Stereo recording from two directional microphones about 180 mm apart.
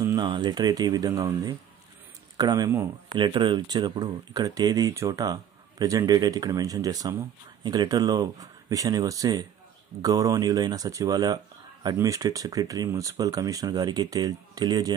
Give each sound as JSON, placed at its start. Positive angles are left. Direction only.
{"t": 0.0, "sound": "speech", "side_deg": -25}